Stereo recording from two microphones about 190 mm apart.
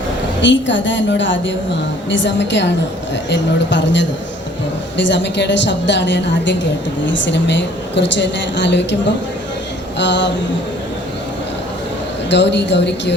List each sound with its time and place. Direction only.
0.4 s a woman's voice: 75° left (ahead or behind)
12.3 s a woman's voice: 65° left (ahead or behind)